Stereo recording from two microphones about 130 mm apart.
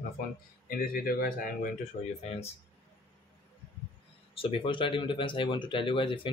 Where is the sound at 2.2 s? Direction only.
50° left (ahead or behind).